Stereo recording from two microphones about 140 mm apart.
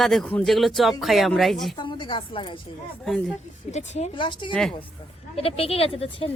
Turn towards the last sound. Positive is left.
turn(degrees=40)  # may be behind; listen again after turning